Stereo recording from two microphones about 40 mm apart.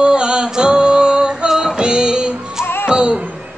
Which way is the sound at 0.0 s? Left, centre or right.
Right.